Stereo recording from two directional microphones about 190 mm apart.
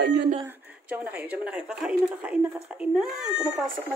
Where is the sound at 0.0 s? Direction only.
60° right (ahead or behind).